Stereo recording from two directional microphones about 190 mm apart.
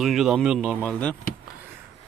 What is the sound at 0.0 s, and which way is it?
Speech, centre (ahead or behind).